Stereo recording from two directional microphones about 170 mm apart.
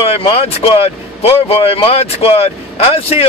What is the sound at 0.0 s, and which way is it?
Speech, 35° left (ahead or behind).